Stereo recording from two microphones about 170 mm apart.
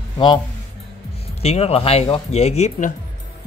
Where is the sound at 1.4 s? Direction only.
35° left (ahead or behind).